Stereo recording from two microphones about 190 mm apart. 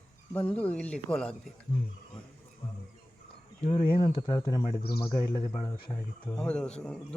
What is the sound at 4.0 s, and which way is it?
A man's voice, 25° left (ahead or behind).